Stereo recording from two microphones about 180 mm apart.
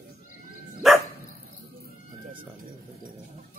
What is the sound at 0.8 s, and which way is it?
Dog, centre (ahead or behind).